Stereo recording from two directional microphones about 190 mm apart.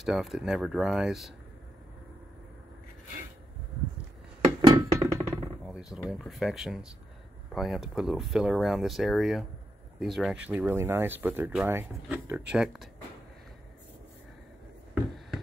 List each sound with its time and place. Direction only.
0.0 s speech: centre (ahead or behind)
4.6 s music: 25° right (ahead or behind)
5.7 s speech: 5° right (ahead or behind)